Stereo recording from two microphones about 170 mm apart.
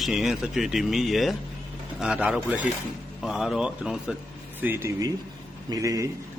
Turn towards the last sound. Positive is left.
turn(degrees=-20)  # may be behind; listen again after turning